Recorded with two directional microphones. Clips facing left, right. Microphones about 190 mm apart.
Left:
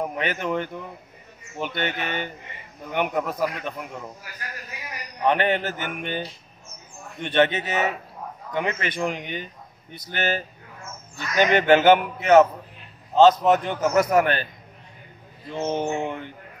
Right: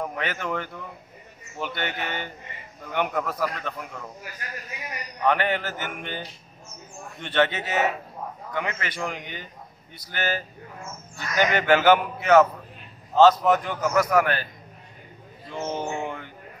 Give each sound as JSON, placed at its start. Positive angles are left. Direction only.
{"t": 0.0, "sound": "a man's voice", "side_deg": 20}
{"t": 5.2, "sound": "a man's voice", "side_deg": 20}
{"t": 15.5, "sound": "a man's voice", "side_deg": 20}